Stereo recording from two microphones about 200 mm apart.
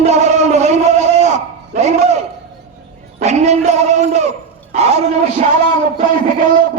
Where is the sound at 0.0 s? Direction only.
35° right (ahead or behind).